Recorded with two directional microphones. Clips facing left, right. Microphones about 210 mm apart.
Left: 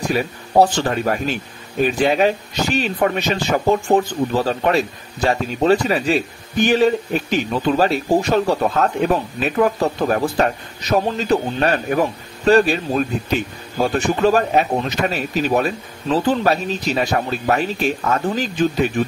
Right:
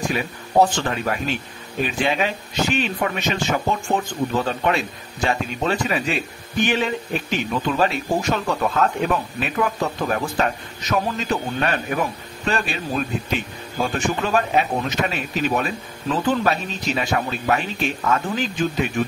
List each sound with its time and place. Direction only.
0.0 s speech: 40° left (ahead or behind)
14.2 s speech: 40° left (ahead or behind)